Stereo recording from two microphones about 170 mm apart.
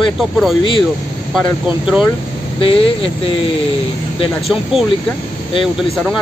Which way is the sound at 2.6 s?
35° left (ahead or behind).